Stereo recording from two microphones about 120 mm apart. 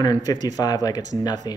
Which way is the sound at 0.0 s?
35° left (ahead or behind).